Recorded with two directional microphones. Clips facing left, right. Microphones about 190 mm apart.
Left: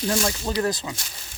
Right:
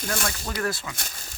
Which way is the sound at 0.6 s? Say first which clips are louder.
Left 3 dB; 25° left (ahead or behind).